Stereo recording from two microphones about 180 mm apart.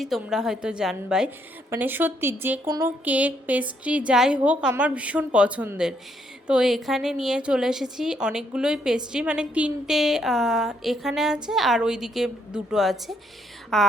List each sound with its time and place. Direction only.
0.0 s a woman's voice: centre (ahead or behind)
2.6 s music: 20° right (ahead or behind)
3.0 s a woman's voice: 10° right (ahead or behind)